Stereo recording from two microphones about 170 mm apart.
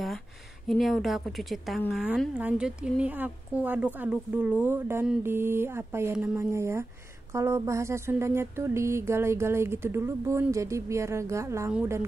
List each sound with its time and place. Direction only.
0.7 s a woman's voice: centre (ahead or behind); by 11.7 s 15° right (ahead or behind)